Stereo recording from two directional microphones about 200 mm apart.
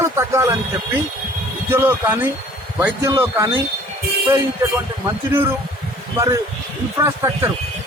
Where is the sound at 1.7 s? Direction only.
10° right (ahead or behind).